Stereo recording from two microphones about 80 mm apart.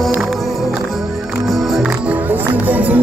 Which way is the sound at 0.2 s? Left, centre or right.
Centre.